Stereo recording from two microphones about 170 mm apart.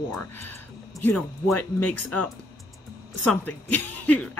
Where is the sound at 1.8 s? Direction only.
10° left (ahead or behind).